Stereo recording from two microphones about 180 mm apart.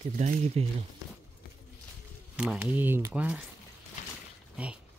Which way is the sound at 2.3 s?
5° right (ahead or behind).